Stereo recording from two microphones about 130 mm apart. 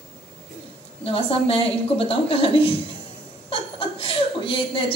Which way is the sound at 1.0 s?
45° left (ahead or behind).